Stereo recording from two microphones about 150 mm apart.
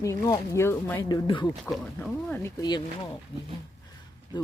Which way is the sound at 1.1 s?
30° left (ahead or behind).